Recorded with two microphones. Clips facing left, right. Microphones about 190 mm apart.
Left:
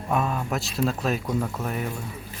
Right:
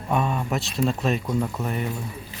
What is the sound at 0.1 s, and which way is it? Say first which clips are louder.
Speech: right 1 dB; centre (ahead or behind).